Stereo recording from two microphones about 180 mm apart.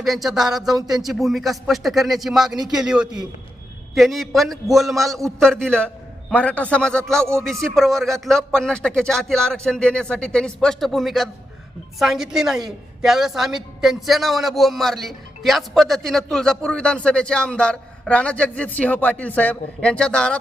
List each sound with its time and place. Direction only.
0.0 s a woman's voice: centre (ahead or behind)